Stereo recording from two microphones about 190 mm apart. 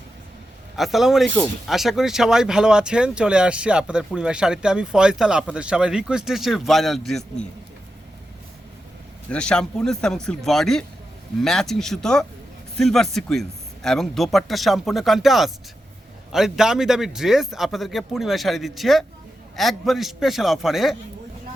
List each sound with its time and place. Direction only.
0.8 s speech: centre (ahead or behind)
9.3 s speech: 5° left (ahead or behind)